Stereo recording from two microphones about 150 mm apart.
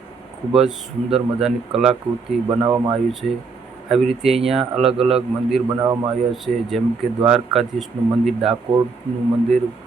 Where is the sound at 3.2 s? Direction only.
70° right (ahead or behind).